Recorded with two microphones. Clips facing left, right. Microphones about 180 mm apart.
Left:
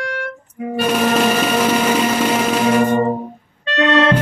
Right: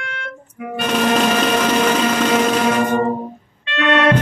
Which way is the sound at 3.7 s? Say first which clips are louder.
Left 1 dB; 30° left (ahead or behind).